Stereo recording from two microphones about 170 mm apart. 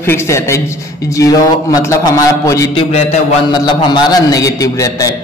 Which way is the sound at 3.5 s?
25° left (ahead or behind).